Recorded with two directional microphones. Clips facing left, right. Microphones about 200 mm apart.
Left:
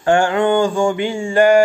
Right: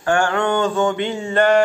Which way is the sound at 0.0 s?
20° left (ahead or behind).